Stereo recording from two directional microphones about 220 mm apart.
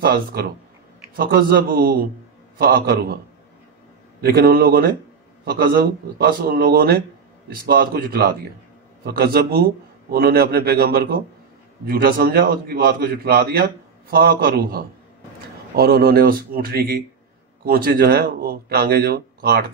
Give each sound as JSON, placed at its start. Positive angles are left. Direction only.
{"t": 0.0, "sound": "a man's voice", "side_deg": -45}
{"t": 4.2, "sound": "a man's voice", "side_deg": -45}